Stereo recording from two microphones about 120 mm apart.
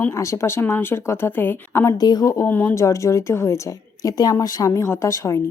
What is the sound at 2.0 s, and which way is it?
Speech, 35° left (ahead or behind).